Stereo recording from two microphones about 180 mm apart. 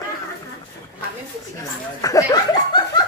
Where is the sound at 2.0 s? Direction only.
20° left (ahead or behind).